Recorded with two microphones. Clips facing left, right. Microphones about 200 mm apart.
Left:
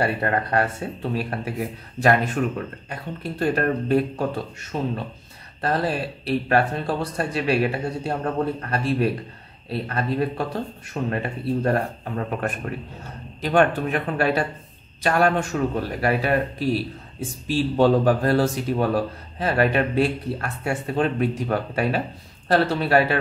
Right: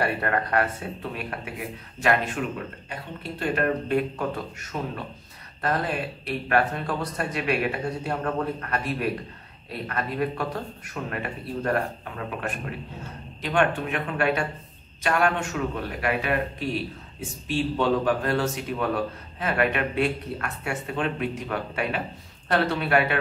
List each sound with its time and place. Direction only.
0.0 s speech: 30° left (ahead or behind)
2.9 s a man's voice: 40° left (ahead or behind)
4.7 s a man's voice: 30° left (ahead or behind)